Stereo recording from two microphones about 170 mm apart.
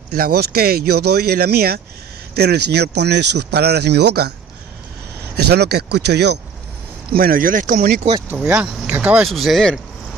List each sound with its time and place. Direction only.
0.1 s speech: 65° right (ahead or behind)
5.3 s speech: 70° right (ahead or behind)
7.1 s speech: 60° right (ahead or behind)
8.3 s speech: 10° right (ahead or behind)